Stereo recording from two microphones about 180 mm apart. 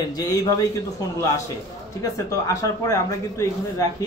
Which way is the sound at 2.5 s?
20° left (ahead or behind).